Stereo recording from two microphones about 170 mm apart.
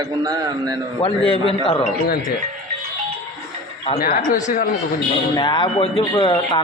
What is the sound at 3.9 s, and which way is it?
Speech, 60° left (ahead or behind).